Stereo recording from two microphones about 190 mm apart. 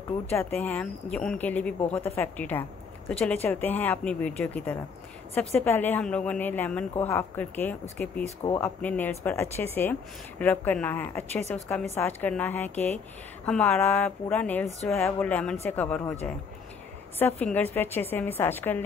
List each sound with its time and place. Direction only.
0.3 s a woman's voice: 10° left (ahead or behind)
12.7 s speech: 35° left (ahead or behind)
13.5 s a woman's voice: 10° left (ahead or behind)